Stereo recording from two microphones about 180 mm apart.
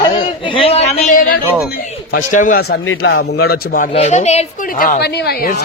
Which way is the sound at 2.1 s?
45° left (ahead or behind).